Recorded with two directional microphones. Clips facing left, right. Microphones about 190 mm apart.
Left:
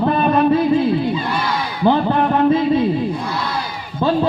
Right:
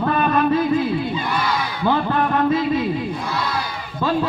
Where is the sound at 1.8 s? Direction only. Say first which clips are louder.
Left 5 dB; 30° left (ahead or behind).